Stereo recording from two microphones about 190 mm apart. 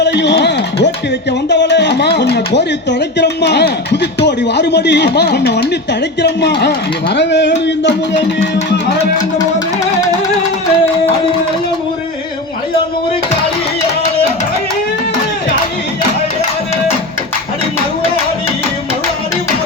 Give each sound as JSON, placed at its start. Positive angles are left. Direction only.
{"t": 0.0, "sound": "a sound", "side_deg": 65}
{"t": 1.5, "sound": "music", "side_deg": 65}
{"t": 3.2, "sound": "speech", "side_deg": 65}